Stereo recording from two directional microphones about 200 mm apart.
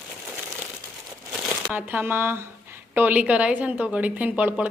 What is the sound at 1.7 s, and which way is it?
A woman's voice, 10° right (ahead or behind).